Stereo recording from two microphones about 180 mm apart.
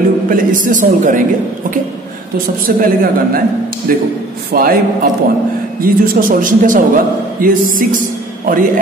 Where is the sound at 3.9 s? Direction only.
50° right (ahead or behind).